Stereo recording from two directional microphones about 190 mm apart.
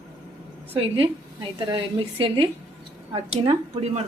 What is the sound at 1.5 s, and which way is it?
A woman's voice, 25° right (ahead or behind).